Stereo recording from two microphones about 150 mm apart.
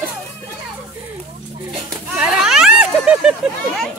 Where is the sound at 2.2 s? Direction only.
5° right (ahead or behind).